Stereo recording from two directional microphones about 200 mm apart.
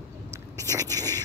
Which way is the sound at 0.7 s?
15° right (ahead or behind).